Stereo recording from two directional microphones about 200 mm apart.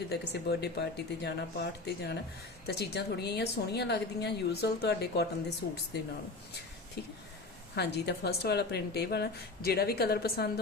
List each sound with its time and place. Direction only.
0.6 s a woman's voice: 55° left (ahead or behind)